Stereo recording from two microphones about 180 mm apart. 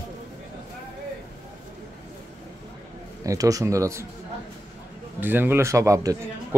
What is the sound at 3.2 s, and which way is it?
Speech, 20° right (ahead or behind).